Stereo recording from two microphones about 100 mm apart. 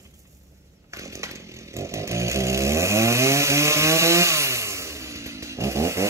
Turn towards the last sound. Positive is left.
turn(degrees=-30)  # may be behind; listen again after turning